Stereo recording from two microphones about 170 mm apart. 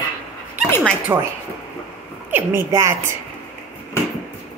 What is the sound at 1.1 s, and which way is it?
Speech, 15° right (ahead or behind).